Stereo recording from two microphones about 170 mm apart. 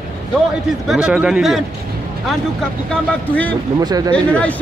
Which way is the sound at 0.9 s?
5° right (ahead or behind).